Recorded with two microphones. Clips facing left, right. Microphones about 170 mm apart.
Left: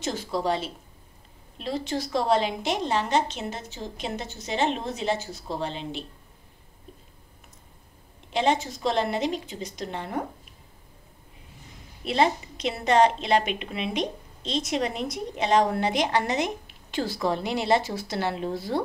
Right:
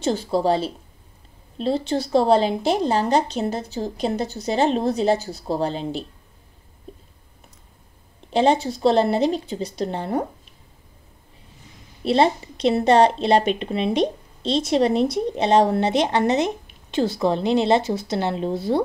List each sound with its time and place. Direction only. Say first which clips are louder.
0.0 s a woman's voice: right 7 dB; 30° right (ahead or behind)
8.3 s a woman's voice: right 6 dB; 35° right (ahead or behind)
12.0 s a woman's voice: right 5 dB; 35° right (ahead or behind)